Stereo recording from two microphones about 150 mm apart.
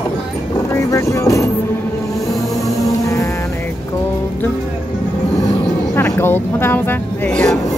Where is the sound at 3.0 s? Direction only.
20° left (ahead or behind).